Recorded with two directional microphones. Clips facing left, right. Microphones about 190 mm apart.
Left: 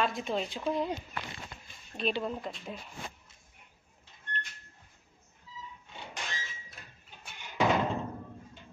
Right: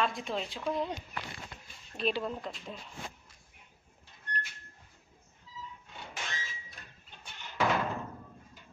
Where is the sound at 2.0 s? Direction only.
Centre (ahead or behind).